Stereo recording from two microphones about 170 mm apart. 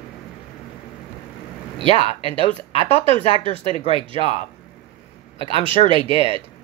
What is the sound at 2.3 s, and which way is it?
Speech, 30° right (ahead or behind).